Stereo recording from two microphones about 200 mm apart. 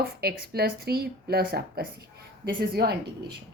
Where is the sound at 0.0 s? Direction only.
50° right (ahead or behind).